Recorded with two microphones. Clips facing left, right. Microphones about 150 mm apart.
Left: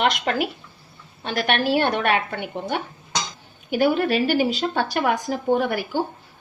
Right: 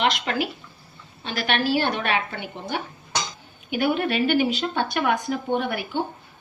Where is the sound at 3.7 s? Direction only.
40° left (ahead or behind).